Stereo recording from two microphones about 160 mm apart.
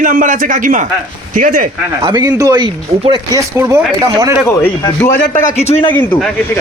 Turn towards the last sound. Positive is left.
turn(degrees=10)  # may be behind; listen again after turning